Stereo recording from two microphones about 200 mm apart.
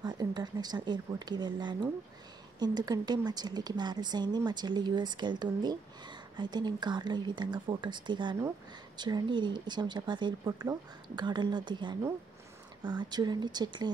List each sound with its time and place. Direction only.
0.0 s a woman's voice: 20° right (ahead or behind)
13.1 s a woman's voice: 20° right (ahead or behind)